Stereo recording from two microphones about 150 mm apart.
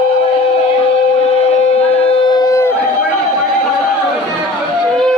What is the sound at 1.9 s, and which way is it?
Civil defense siren, 40° left (ahead or behind).